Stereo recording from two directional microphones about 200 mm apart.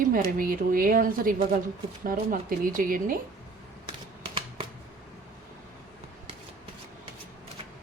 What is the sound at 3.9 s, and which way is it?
Shuffling cards, 25° right (ahead or behind).